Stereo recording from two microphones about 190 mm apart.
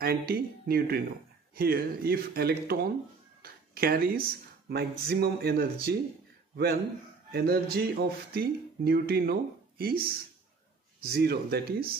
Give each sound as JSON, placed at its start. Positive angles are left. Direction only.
{"t": 0.0, "sound": "speech", "side_deg": -50}